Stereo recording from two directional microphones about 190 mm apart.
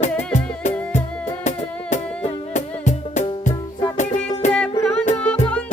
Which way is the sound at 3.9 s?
40° left (ahead or behind).